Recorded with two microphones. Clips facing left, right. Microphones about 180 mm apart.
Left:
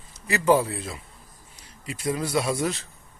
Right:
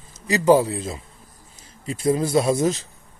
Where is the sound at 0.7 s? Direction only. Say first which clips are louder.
Right 5 dB; 25° right (ahead or behind).